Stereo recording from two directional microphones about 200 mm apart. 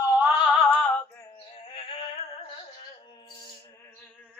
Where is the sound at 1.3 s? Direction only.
30° left (ahead or behind).